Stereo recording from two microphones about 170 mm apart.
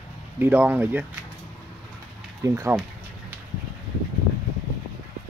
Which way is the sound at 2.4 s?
15° right (ahead or behind).